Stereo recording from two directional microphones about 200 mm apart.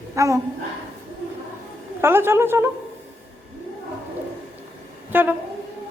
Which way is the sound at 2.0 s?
10° right (ahead or behind).